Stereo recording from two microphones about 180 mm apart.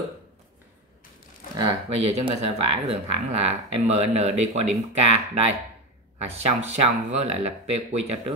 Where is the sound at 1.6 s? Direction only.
30° right (ahead or behind).